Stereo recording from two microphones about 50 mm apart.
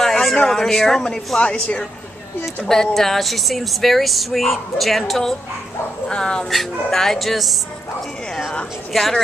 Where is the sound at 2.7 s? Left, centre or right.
Centre.